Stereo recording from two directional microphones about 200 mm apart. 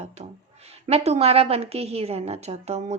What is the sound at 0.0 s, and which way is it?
A woman's voice, 35° right (ahead or behind).